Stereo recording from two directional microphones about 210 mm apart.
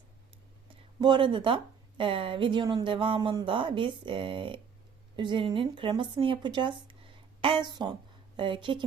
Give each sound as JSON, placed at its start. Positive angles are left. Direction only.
{"t": 1.0, "sound": "a woman's voice", "side_deg": -25}